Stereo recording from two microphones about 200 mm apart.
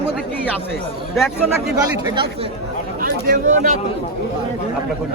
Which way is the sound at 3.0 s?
45° right (ahead or behind).